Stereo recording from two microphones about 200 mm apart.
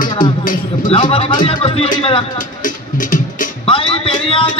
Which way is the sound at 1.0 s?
30° left (ahead or behind).